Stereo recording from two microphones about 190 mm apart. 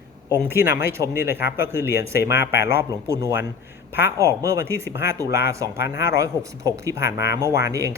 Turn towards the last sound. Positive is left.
turn(degrees=-15)  # may be behind; listen again after turning